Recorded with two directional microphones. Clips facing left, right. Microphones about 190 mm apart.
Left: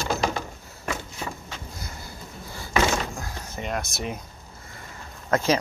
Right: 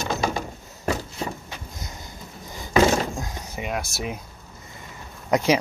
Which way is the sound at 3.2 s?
15° right (ahead or behind).